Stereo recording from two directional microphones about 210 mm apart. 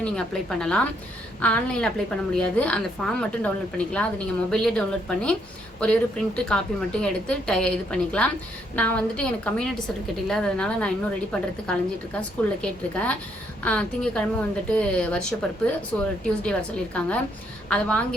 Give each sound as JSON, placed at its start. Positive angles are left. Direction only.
{"t": 0.0, "sound": "a woman's voice", "side_deg": 5}